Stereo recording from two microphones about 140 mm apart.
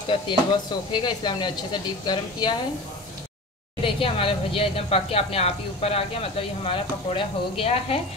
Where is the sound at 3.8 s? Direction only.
40° left (ahead or behind).